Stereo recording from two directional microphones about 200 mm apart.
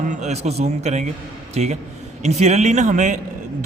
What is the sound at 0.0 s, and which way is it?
A man's voice, 35° right (ahead or behind).